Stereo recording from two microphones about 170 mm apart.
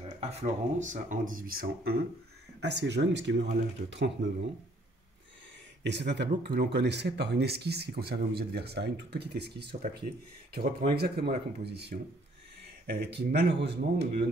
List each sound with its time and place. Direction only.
0.2 s speech: 40° right (ahead or behind)
2.6 s speech: 90° right
5.9 s speech: 90° right; by 9.8 s 75° right (ahead or behind)
10.5 s speech: 65° right (ahead or behind)